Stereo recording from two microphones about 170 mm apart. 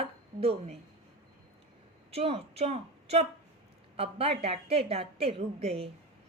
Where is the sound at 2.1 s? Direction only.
35° right (ahead or behind).